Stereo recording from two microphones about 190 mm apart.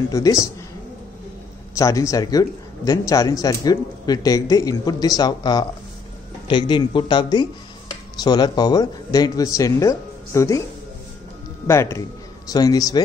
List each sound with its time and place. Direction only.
0.1 s speech: 15° left (ahead or behind)
1.8 s a man's voice: 15° left (ahead or behind)
11.6 s a man's voice: 15° left (ahead or behind)